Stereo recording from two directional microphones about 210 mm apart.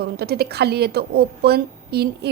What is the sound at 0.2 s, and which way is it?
A woman's voice, 50° right (ahead or behind).